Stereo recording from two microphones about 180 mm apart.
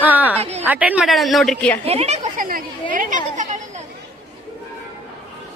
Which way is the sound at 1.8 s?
35° right (ahead or behind).